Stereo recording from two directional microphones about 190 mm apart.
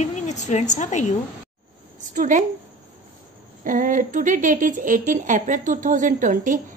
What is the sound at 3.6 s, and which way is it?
A woman's voice, 45° right (ahead or behind).